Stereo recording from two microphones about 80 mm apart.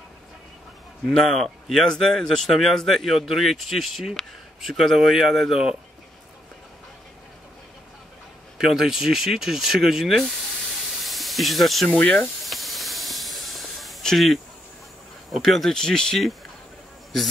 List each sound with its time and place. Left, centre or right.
1.0 s speech: centre
8.5 s speech: centre
11.9 s speech: centre
12.4 s hiss: centre
15.3 s speech: centre